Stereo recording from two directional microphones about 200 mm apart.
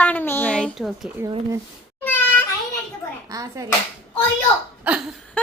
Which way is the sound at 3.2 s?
15° right (ahead or behind).